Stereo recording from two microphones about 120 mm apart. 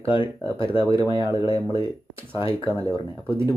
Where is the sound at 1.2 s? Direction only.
25° right (ahead or behind).